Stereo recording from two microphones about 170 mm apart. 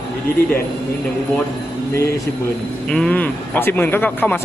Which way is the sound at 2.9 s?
5° left (ahead or behind).